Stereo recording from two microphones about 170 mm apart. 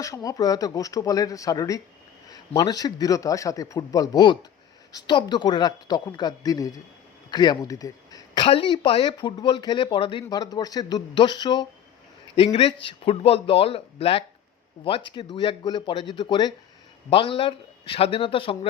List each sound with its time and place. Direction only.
0.0 s speech: 20° left (ahead or behind)
8.4 s speech: 30° left (ahead or behind)